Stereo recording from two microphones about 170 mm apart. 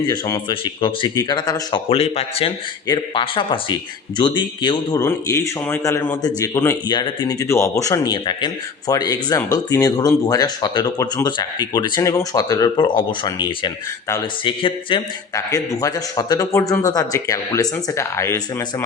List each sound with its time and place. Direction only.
0.1 s speech: 25° left (ahead or behind)
5.0 s speech: 15° left (ahead or behind)